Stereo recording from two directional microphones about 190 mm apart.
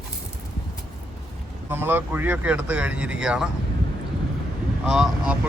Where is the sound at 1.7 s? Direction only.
10° right (ahead or behind).